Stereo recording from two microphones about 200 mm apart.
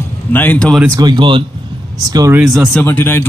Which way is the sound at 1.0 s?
20° right (ahead or behind).